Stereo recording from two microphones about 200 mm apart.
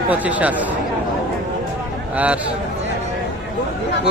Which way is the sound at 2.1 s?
5° right (ahead or behind).